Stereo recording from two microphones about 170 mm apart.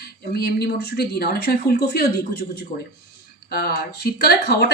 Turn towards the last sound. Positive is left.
turn(degrees=75)  # may be behind; listen again after turning